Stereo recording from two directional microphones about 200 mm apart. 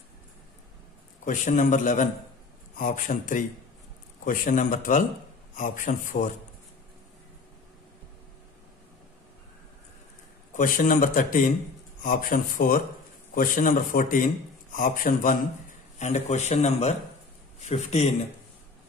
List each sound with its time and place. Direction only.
1.2 s a man's voice: 40° left (ahead or behind)
10.5 s a man's voice: 40° left (ahead or behind)